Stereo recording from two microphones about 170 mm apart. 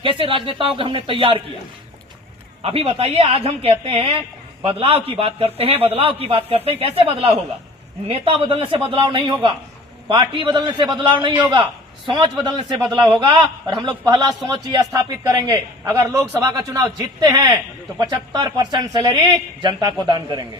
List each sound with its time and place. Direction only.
0.0 s a man's voice: 30° right (ahead or behind)
2.6 s a man's voice: 35° right (ahead or behind)